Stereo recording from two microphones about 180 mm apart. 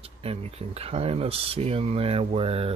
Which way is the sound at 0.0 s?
35° right (ahead or behind).